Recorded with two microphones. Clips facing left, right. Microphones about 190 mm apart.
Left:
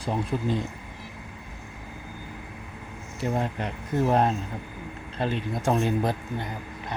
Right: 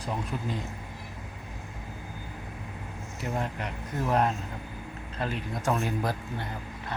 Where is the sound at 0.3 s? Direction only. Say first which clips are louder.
Left 6 dB; 35° left (ahead or behind).